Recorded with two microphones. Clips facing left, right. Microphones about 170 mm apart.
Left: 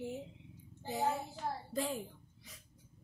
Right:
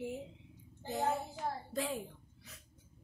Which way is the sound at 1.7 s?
Centre (ahead or behind).